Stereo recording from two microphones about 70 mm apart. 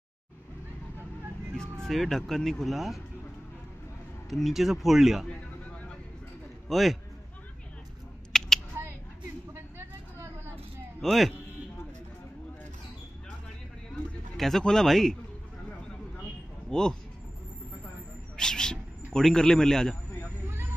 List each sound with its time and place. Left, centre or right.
1.6 s speech: centre
4.3 s speech: centre
6.7 s speech: centre
8.3 s a sound: centre
9.5 s vehicle: right
11.0 s a man's voice: centre
14.3 s a sound: centre
14.6 s a man's voice: centre
16.7 s a man's voice: centre
18.3 s owl: centre
19.1 s a man's voice: centre
20.4 s vehicle: right